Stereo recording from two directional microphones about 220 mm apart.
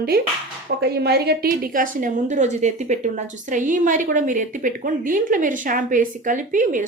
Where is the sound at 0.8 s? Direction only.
45° right (ahead or behind).